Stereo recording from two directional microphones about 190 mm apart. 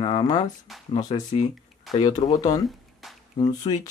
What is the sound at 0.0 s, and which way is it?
Speech, 25° left (ahead or behind).